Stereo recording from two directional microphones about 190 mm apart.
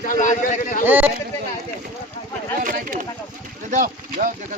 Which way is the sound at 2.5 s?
45° right (ahead or behind).